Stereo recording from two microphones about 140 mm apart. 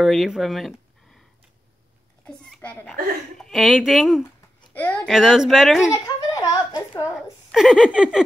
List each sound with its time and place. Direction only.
0.0 s speech: centre (ahead or behind)
2.2 s a child's voice: 10° left (ahead or behind)
4.7 s a woman's voice: 15° left (ahead or behind)
5.0 s speech: centre (ahead or behind)
6.3 s a sound: 30° left (ahead or behind)
7.2 s speech: 5° right (ahead or behind)